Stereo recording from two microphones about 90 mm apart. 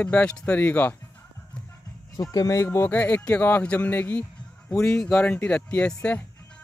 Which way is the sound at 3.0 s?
15° left (ahead or behind).